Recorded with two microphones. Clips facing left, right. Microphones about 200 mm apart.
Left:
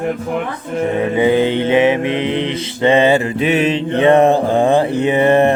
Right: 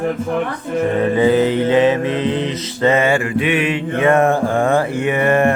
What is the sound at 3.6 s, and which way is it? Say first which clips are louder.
Mantra: left 3 dB; 40° left (ahead or behind).